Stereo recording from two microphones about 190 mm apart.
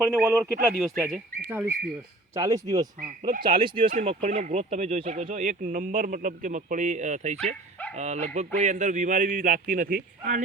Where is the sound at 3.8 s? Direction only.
40° right (ahead or behind).